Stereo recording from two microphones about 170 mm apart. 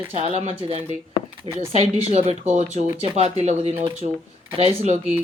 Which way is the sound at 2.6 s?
35° right (ahead or behind).